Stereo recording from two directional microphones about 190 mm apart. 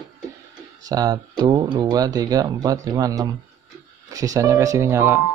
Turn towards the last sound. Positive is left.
turn(degrees=-10)  # may be behind; listen again after turning